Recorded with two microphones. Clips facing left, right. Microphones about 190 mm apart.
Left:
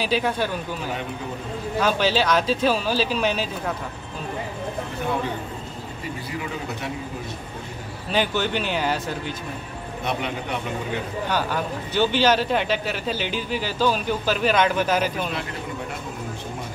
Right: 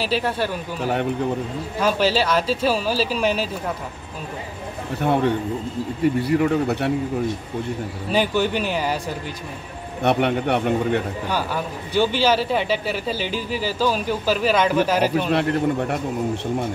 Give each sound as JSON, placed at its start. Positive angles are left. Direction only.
{"t": 0.0, "sound": "speech", "side_deg": -5}
{"t": 1.8, "sound": "speech", "side_deg": -5}
{"t": 5.0, "sound": "a man's voice", "side_deg": -65}
{"t": 8.1, "sound": "speech", "side_deg": -5}
{"t": 10.0, "sound": "a man's voice", "side_deg": -65}
{"t": 11.2, "sound": "speech", "side_deg": -10}
{"t": 15.3, "sound": "a man's voice", "side_deg": -60}